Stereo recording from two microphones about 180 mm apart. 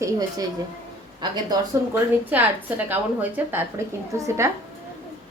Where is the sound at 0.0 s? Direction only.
20° right (ahead or behind).